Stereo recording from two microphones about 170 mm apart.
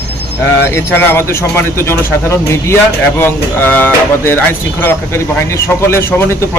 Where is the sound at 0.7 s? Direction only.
15° left (ahead or behind).